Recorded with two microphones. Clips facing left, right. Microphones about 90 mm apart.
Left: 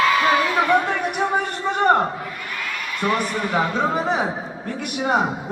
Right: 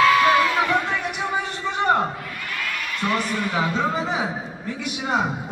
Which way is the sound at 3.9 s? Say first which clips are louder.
Left 3 dB; 55° left (ahead or behind).